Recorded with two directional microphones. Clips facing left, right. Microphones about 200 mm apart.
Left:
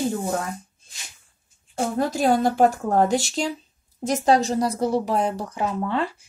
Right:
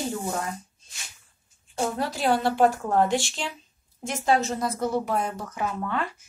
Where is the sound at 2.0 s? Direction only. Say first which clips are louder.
Left 6 dB; 45° left (ahead or behind); by 6.2 s 30° left (ahead or behind).